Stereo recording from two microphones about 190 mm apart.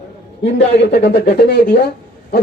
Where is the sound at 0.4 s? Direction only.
60° left (ahead or behind).